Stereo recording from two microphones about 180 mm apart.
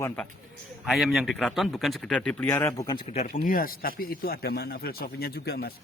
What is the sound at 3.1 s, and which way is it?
Speech, 45° left (ahead or behind).